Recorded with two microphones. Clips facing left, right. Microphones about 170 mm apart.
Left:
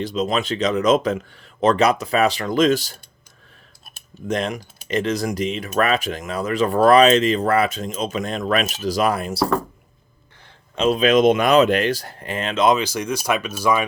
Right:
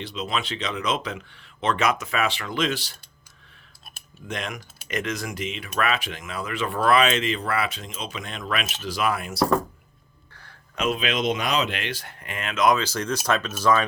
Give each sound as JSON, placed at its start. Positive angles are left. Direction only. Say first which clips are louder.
{"t": 0.0, "sound": "speech", "louder": "left 7 dB", "side_deg": 45}
{"t": 4.3, "sound": "speech", "louder": "left 9 dB", "side_deg": 35}
{"t": 12.8, "sound": "speech", "louder": "left 3 dB", "side_deg": 10}